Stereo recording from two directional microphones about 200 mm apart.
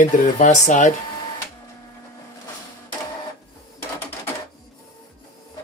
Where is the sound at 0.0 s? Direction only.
35° left (ahead or behind).